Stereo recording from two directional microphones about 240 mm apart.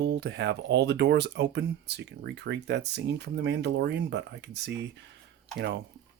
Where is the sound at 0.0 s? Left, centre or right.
Right.